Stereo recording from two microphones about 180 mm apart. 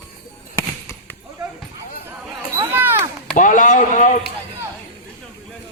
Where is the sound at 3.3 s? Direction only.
45° left (ahead or behind).